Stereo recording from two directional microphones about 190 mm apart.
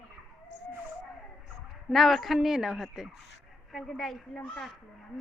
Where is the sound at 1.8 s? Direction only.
Centre (ahead or behind).